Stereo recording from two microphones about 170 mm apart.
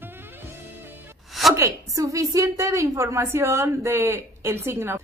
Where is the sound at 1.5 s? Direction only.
20° right (ahead or behind).